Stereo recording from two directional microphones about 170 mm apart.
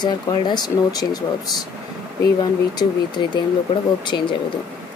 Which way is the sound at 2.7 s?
25° left (ahead or behind).